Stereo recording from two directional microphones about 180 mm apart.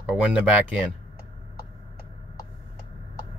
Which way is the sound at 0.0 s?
5° right (ahead or behind).